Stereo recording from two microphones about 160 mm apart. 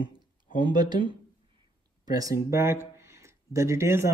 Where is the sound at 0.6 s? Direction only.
25° right (ahead or behind).